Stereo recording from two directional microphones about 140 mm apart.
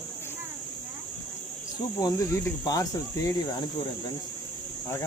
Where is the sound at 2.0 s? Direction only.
25° left (ahead or behind).